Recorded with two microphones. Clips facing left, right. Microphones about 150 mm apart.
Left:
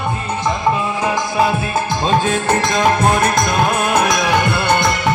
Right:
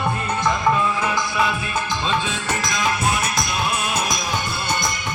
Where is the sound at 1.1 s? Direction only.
40° left (ahead or behind).